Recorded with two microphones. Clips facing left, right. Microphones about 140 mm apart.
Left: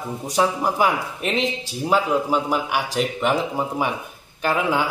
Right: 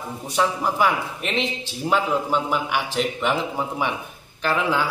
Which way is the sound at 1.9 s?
5° left (ahead or behind).